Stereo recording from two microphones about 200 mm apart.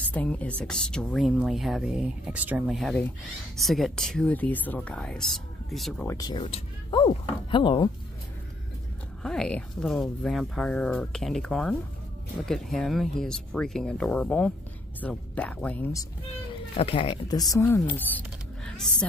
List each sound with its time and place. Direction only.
0.1 s speech: 5° left (ahead or behind)
6.0 s speech: 20° left (ahead or behind)
9.2 s a child's voice: 5° left (ahead or behind)